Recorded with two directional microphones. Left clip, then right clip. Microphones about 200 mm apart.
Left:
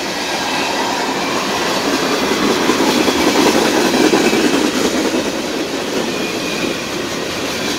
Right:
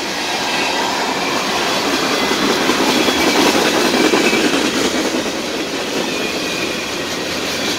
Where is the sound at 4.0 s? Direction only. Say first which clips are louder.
Left 2 dB; 30° left (ahead or behind).